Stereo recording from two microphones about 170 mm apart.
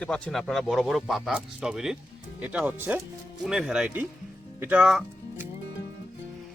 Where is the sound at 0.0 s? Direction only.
5° left (ahead or behind).